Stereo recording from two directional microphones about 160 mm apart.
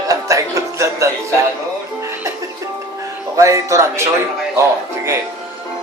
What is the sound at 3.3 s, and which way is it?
Speech, 20° right (ahead or behind).